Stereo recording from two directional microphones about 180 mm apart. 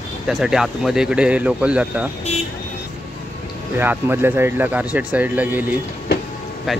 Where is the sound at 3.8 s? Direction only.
10° right (ahead or behind).